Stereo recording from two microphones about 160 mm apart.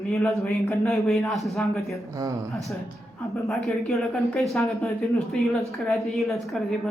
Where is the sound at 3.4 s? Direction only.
Centre (ahead or behind).